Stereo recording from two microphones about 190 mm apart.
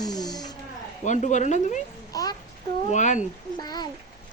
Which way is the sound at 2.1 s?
20° left (ahead or behind).